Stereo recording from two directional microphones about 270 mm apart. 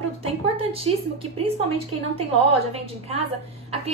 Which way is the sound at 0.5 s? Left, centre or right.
Right.